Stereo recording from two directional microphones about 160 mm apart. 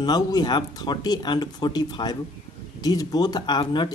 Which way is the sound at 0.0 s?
25° left (ahead or behind).